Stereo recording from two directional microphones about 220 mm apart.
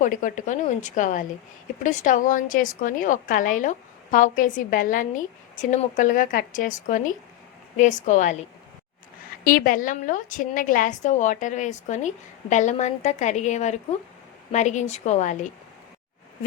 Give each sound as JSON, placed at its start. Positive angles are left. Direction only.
{"t": 0.0, "sound": "a woman's voice", "side_deg": 35}
{"t": 9.4, "sound": "a woman's voice", "side_deg": 40}